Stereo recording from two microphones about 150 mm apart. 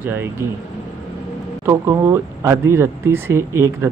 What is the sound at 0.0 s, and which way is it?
Speech, 15° right (ahead or behind).